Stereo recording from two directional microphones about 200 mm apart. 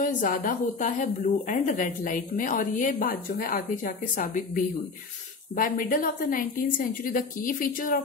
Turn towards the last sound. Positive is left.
turn(degrees=40)  # may be behind; listen again after turning